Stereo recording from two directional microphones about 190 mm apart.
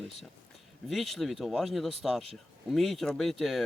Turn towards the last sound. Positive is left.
turn(degrees=0)  # may be behind; listen again after turning